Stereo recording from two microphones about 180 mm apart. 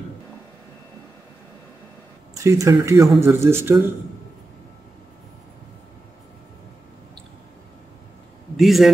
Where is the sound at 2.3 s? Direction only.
15° right (ahead or behind).